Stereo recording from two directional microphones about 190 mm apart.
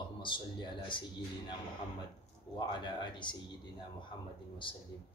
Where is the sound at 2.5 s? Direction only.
25° left (ahead or behind).